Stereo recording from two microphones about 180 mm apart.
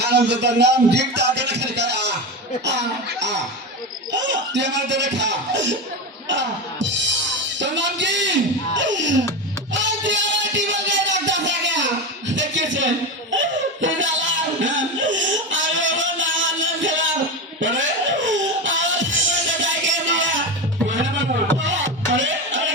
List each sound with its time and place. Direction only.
0.0 s speech: 70° right (ahead or behind)
6.2 s music: 90° right
7.6 s speech: 85° right
9.7 s music: 90° right
12.3 s a sound: 90° right
18.3 s music: 90° right
22.1 s music: 90° right